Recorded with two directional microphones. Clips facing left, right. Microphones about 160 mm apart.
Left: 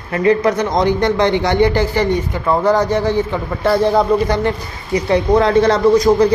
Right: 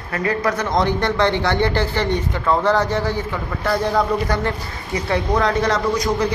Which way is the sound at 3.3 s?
30° left (ahead or behind).